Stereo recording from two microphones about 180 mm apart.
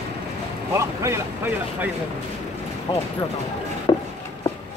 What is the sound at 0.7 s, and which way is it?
Vehicle, 15° right (ahead or behind).